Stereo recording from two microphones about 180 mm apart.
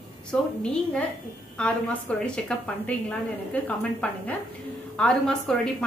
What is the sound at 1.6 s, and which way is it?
Speech, 5° left (ahead or behind).